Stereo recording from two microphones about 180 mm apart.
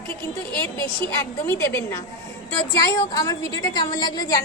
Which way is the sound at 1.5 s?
15° left (ahead or behind).